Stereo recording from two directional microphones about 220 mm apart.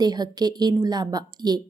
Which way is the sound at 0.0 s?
20° right (ahead or behind).